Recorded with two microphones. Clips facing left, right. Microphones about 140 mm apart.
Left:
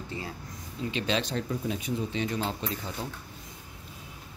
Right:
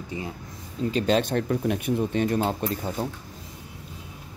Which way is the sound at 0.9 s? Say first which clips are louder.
Right 7 dB; 45° right (ahead or behind).